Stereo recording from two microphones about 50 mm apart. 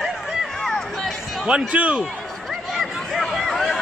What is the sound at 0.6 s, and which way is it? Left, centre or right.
Music, centre.